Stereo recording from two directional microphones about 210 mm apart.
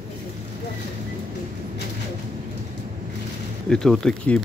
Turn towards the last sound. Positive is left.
turn(degrees=5)  # may be behind; listen again after turning